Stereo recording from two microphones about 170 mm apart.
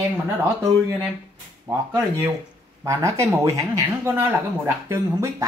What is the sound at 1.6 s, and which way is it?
Speech, 15° right (ahead or behind).